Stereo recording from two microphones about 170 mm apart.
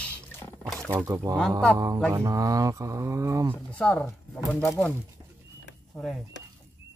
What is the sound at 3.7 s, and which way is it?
Speech, 5° left (ahead or behind).